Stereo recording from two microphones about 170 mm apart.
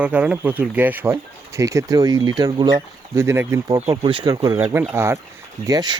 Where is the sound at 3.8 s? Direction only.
35° right (ahead or behind).